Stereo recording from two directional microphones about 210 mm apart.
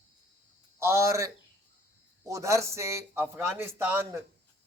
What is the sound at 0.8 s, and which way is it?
Speech, 15° right (ahead or behind).